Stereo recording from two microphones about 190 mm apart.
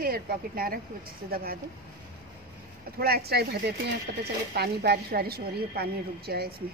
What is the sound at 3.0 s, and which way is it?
A woman's voice, 55° right (ahead or behind).